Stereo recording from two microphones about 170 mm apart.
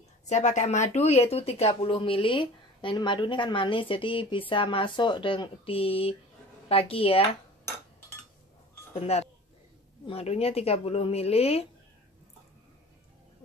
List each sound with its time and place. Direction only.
0.3 s speech: 45° left (ahead or behind)
9.0 s speech: 40° left (ahead or behind)